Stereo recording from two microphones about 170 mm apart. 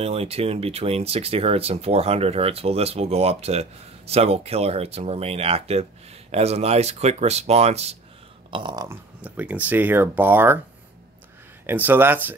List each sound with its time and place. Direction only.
0.0 s speech: 35° right (ahead or behind)
8.5 s speech: 30° right (ahead or behind)
8.8 s speech: 10° right (ahead or behind)
11.6 s speech: 10° right (ahead or behind)